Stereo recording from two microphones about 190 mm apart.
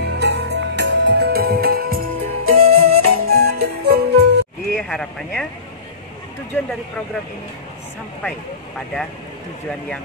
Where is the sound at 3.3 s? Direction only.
55° right (ahead or behind).